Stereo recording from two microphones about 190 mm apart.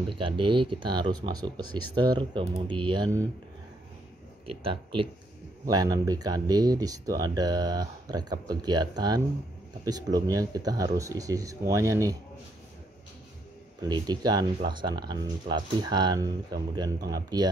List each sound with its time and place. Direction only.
0.1 s speech: 25° right (ahead or behind)
1.6 s speech: 90° right
2.0 s speech: 25° right (ahead or behind)
4.5 s speech: 30° right (ahead or behind)
13.7 s speech: 20° right (ahead or behind)